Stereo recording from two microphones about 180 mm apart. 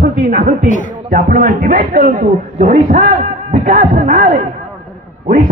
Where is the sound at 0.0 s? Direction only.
50° right (ahead or behind).